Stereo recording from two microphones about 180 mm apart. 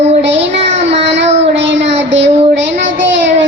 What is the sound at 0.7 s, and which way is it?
Child singing, 35° right (ahead or behind).